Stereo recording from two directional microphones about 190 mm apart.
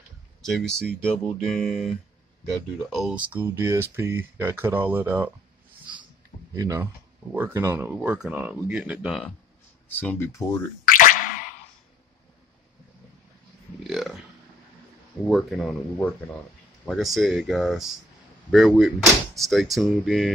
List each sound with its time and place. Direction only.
0.5 s speech: 5° left (ahead or behind)
6.5 s speech: 15° right (ahead or behind)
9.8 s speech: 10° left (ahead or behind)
10.9 s a sound: 45° left (ahead or behind)
15.2 s speech: centre (ahead or behind)